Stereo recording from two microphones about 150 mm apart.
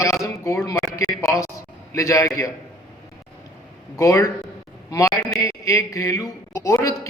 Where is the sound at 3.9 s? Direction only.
20° left (ahead or behind).